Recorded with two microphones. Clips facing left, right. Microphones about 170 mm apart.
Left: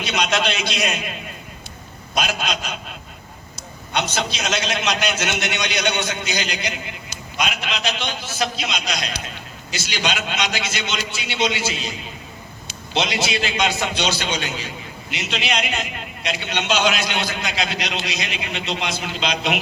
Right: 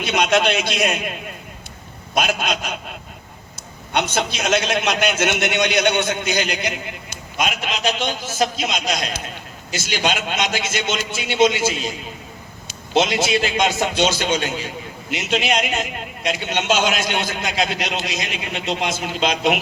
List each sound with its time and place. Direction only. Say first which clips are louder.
0.0 s a man's voice: right 4 dB; 55° right (ahead or behind)
3.9 s a man's voice: right 2 dB; 55° right (ahead or behind)